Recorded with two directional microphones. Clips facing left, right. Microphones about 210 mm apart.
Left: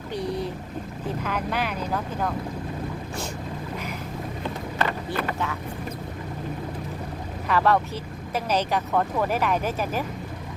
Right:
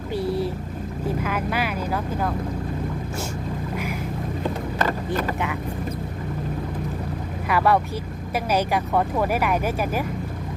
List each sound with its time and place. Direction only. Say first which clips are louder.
0.1 s boat: right 4 dB; 5° right (ahead or behind)
1.2 s speech: even; 5° right (ahead or behind)
4.8 s vehicle: right 2 dB; 40° right (ahead or behind)
7.4 s speech: right 1 dB; 10° right (ahead or behind)